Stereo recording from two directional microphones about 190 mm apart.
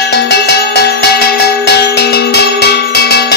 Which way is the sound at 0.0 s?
60° left (ahead or behind).